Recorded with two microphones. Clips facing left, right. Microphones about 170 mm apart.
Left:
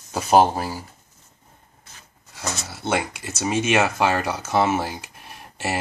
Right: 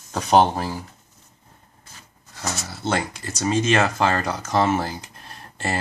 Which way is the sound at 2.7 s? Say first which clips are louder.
Left 1 dB; 5° left (ahead or behind).